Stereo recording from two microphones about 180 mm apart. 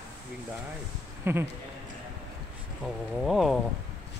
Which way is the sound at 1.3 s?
15° right (ahead or behind).